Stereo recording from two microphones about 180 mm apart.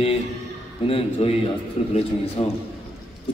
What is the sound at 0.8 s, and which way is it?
A man's voice, 35° left (ahead or behind).